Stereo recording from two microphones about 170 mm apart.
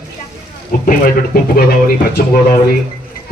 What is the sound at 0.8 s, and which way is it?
Speech, 55° left (ahead or behind).